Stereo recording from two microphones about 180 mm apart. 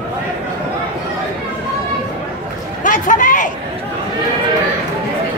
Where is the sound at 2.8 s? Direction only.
45° left (ahead or behind).